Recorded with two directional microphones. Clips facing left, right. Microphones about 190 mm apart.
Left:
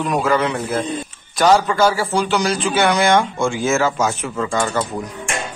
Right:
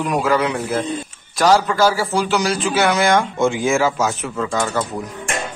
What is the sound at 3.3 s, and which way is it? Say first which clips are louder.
Speech: right 1 dB; 20° right (ahead or behind).